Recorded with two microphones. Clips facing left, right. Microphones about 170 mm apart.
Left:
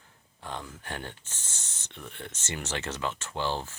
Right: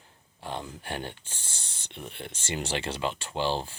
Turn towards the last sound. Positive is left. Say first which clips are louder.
# right 3 dB
turn(degrees=-25)  # may be behind; listen again after turning